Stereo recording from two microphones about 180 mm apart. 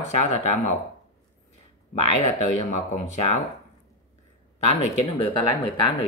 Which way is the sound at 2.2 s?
40° left (ahead or behind).